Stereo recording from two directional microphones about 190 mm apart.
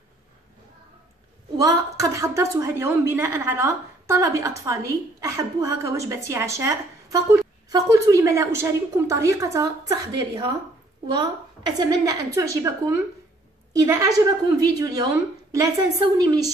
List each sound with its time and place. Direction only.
1.6 s a woman's voice: 15° right (ahead or behind)